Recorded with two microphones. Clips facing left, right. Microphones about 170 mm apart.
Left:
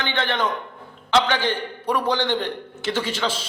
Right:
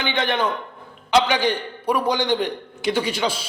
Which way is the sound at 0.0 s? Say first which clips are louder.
Right 2 dB; 15° right (ahead or behind).